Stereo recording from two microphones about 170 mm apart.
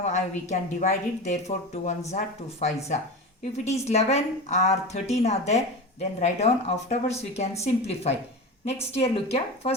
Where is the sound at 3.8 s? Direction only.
40° left (ahead or behind).